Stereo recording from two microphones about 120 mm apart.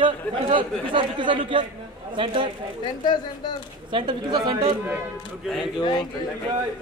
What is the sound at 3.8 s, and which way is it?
Speech, 40° right (ahead or behind).